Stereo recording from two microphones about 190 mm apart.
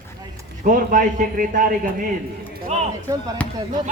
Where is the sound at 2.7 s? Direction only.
35° right (ahead or behind).